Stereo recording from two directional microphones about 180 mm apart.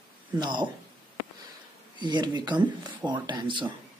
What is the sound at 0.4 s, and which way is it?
Speech, 25° right (ahead or behind).